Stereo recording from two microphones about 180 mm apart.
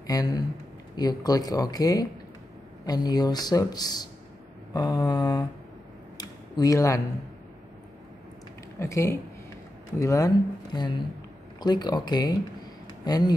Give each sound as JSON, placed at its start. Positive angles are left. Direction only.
{"t": 0.0, "sound": "a man's voice", "side_deg": 20}
{"t": 6.1, "sound": "a sound", "side_deg": 20}
{"t": 8.7, "sound": "a man's voice", "side_deg": 15}